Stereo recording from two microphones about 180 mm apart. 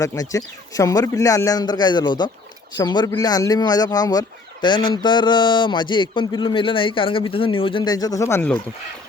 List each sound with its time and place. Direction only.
0.0 s speech: 20° left (ahead or behind)